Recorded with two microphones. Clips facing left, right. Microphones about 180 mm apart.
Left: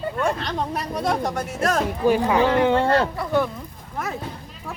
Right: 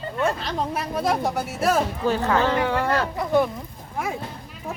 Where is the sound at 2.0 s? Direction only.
15° left (ahead or behind).